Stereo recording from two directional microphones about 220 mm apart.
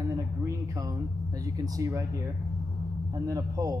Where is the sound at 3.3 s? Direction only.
15° right (ahead or behind).